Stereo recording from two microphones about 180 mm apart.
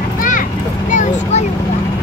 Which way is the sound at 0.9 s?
40° left (ahead or behind).